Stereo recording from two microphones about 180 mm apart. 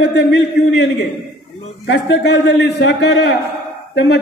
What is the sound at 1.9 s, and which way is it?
Speech, 65° left (ahead or behind).